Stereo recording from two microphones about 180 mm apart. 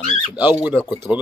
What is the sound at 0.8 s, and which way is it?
Speech, 20° left (ahead or behind).